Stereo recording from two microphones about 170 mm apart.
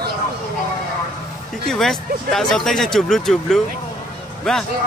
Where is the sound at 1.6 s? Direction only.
Centre (ahead or behind).